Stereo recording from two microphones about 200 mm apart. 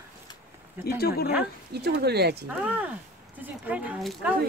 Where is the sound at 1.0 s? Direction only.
50° left (ahead or behind).